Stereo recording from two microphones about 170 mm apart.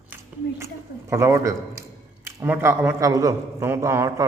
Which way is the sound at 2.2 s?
15° right (ahead or behind).